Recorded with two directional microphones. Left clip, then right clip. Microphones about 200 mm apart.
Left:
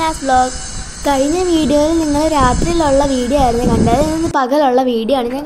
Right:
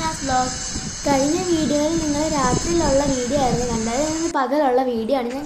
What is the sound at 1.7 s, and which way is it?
Speech, 45° left (ahead or behind).